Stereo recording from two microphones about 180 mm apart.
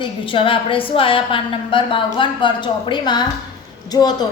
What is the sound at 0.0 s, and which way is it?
A woman's voice, 30° left (ahead or behind).